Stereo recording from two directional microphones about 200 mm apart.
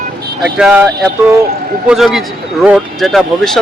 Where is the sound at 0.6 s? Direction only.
5° right (ahead or behind).